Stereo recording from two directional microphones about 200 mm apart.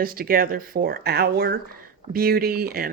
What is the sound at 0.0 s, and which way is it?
Speech, 45° right (ahead or behind).